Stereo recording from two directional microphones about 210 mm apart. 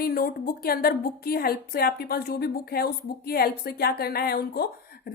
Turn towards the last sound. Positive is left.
turn(degrees=45)  # may be behind; listen again after turning